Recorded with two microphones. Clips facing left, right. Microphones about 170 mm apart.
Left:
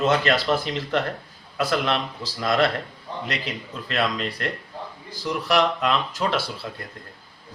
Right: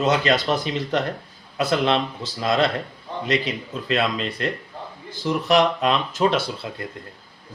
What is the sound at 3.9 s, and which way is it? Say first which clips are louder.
Speech: right 2 dB; 20° right (ahead or behind).